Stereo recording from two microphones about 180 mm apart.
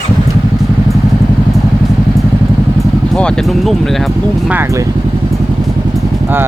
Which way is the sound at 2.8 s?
5° left (ahead or behind).